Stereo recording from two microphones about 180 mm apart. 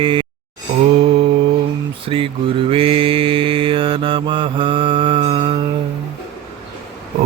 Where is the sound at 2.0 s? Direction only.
30° right (ahead or behind).